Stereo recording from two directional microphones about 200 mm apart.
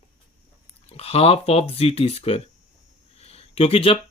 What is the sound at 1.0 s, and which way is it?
Speech, 30° left (ahead or behind).